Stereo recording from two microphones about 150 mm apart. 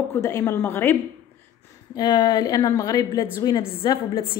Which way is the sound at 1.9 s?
30° left (ahead or behind).